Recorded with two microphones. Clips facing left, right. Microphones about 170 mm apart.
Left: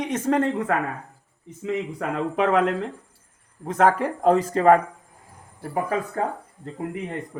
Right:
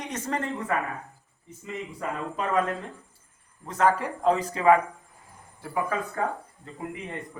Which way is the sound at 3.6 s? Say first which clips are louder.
Left 4 dB; 55° left (ahead or behind).